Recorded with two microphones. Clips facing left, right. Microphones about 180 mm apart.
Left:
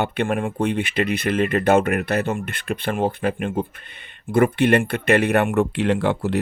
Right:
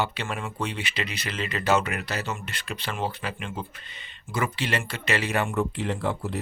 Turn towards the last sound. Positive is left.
turn(degrees=75)  # may be behind; listen again after turning